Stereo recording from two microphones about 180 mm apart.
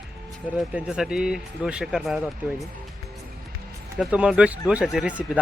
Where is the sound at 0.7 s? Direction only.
5° right (ahead or behind).